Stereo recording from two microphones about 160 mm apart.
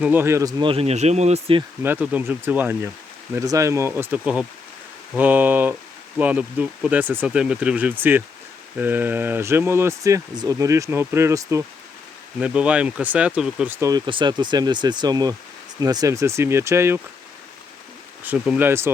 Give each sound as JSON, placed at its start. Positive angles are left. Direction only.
{"t": 0.0, "sound": "speech", "side_deg": -15}
{"t": 0.6, "sound": "speech", "side_deg": -35}
{"t": 1.8, "sound": "speech", "side_deg": -10}
{"t": 12.4, "sound": "speech", "side_deg": -5}
{"t": 13.7, "sound": "speech", "side_deg": -20}
{"t": 18.2, "sound": "speech", "side_deg": -10}